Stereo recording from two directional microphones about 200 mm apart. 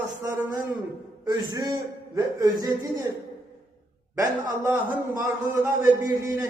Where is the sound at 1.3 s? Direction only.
20° right (ahead or behind).